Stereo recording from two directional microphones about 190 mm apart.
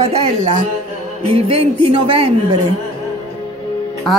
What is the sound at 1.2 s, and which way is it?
Speech, 30° right (ahead or behind).